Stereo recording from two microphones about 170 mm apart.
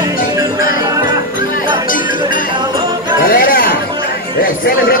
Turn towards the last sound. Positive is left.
turn(degrees=55)  # may be behind; listen again after turning